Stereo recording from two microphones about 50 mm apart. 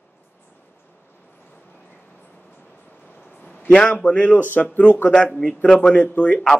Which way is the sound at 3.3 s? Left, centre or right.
Left.